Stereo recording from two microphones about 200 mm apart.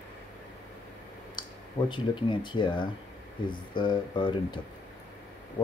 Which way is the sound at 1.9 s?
25° left (ahead or behind).